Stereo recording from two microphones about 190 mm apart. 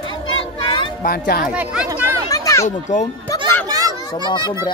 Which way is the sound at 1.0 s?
55° left (ahead or behind).